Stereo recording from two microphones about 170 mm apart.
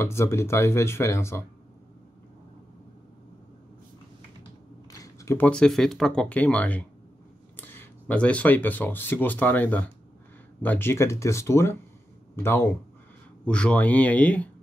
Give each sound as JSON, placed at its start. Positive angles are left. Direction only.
{"t": 0.0, "sound": "speech", "side_deg": 15}
{"t": 4.9, "sound": "a sound", "side_deg": 20}
{"t": 5.5, "sound": "speech", "side_deg": 5}
{"t": 13.5, "sound": "speech", "side_deg": 5}